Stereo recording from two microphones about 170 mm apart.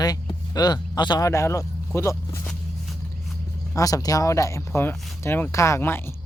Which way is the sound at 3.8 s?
20° left (ahead or behind).